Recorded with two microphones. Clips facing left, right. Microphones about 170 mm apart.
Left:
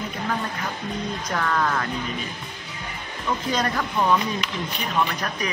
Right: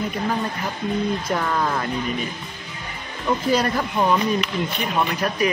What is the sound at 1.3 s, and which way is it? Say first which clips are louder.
Speech: left 2 dB; 15° right (ahead or behind).